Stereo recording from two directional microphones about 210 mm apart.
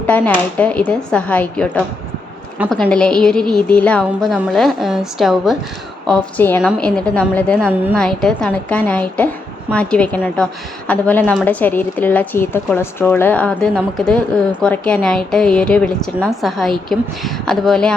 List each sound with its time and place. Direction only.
0.1 s a woman's voice: 5° left (ahead or behind)